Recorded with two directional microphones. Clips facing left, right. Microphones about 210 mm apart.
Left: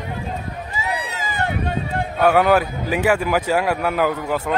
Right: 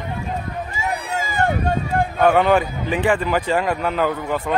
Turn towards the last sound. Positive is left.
turn(degrees=10)  # may be behind; listen again after turning